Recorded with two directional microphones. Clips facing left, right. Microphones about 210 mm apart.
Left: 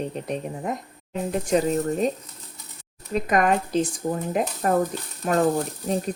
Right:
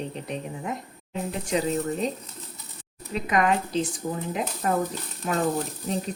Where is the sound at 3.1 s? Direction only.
45° left (ahead or behind).